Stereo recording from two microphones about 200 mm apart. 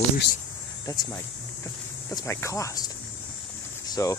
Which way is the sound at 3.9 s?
15° left (ahead or behind).